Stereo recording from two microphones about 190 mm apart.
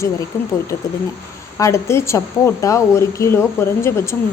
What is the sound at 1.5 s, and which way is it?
A woman's voice, 15° left (ahead or behind).